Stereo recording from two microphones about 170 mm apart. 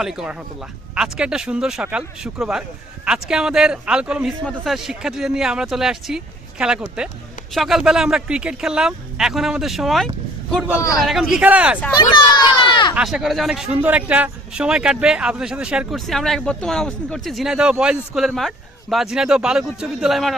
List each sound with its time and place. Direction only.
0.0 s a man's voice: 5° right (ahead or behind)
11.9 s speech: 25° left (ahead or behind)
13.0 s a man's voice: 5° right (ahead or behind)